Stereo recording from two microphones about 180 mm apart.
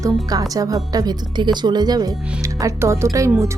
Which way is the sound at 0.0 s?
20° right (ahead or behind).